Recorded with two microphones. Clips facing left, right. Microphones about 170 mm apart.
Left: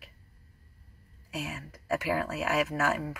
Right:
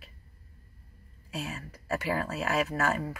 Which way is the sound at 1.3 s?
10° left (ahead or behind).